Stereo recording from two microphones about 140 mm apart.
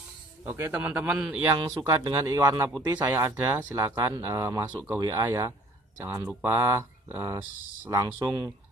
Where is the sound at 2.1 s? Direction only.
25° right (ahead or behind).